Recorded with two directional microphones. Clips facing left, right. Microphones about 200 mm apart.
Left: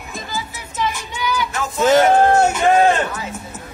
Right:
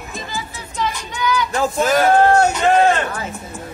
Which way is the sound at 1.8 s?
25° left (ahead or behind).